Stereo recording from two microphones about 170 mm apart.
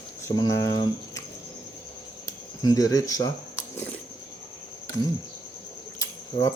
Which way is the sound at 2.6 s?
20° left (ahead or behind).